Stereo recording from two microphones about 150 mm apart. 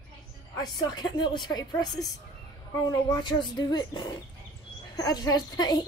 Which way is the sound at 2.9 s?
25° left (ahead or behind).